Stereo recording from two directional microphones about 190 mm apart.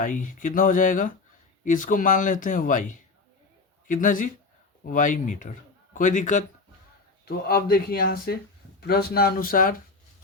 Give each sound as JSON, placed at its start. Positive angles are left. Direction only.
{"t": 0.0, "sound": "a man's voice", "side_deg": 45}
{"t": 7.3, "sound": "speech", "side_deg": 55}